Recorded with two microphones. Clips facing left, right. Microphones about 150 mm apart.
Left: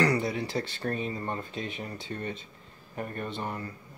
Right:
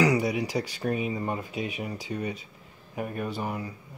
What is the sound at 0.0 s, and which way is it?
Speech, 10° right (ahead or behind).